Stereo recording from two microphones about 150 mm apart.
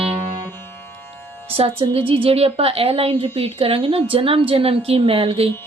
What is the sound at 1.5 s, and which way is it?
A woman's voice, 40° right (ahead or behind).